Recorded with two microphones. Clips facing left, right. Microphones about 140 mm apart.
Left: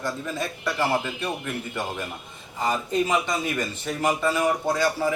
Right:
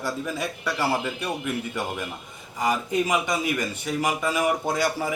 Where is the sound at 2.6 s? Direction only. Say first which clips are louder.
Even; 15° right (ahead or behind).